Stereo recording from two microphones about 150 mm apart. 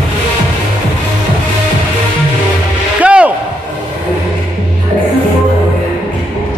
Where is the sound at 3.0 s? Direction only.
10° right (ahead or behind).